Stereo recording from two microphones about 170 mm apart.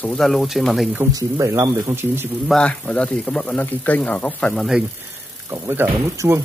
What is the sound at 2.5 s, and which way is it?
Speech, 5° left (ahead or behind).